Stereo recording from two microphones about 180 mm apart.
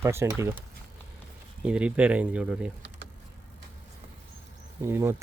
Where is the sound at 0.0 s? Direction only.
15° right (ahead or behind).